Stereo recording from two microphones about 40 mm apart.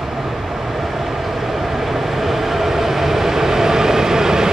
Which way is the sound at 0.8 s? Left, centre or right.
Centre.